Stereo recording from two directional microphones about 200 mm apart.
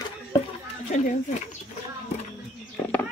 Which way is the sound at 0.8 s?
35° left (ahead or behind).